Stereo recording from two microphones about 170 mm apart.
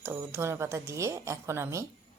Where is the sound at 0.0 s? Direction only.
15° right (ahead or behind).